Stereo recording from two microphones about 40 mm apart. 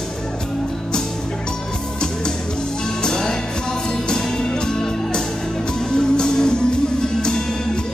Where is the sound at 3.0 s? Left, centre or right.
Centre.